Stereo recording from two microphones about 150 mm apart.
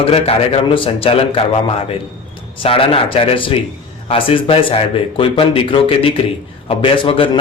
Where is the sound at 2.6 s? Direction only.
40° left (ahead or behind).